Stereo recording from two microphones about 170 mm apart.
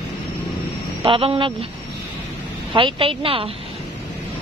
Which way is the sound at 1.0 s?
30° right (ahead or behind).